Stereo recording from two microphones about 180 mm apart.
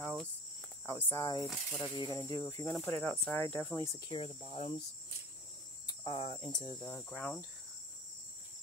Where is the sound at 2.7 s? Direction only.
5° left (ahead or behind).